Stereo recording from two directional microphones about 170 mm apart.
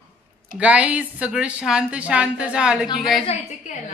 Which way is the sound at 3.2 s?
40° left (ahead or behind).